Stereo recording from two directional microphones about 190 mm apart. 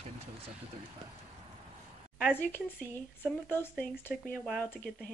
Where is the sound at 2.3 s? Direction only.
10° left (ahead or behind).